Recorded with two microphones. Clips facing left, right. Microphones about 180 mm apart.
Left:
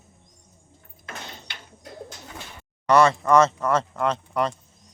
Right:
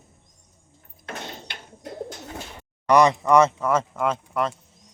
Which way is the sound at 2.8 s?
15° right (ahead or behind).